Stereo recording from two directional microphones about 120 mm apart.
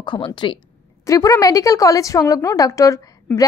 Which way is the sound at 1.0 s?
30° left (ahead or behind).